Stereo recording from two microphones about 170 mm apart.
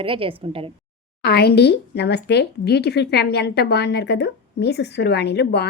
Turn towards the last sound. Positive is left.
turn(degrees=80)